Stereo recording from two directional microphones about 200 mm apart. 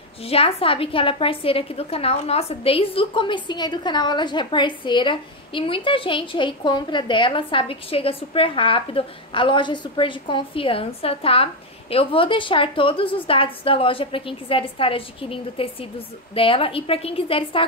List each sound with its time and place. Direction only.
0.2 s a woman's voice: 30° left (ahead or behind)